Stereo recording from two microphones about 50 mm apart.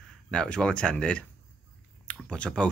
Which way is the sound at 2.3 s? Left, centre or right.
Left.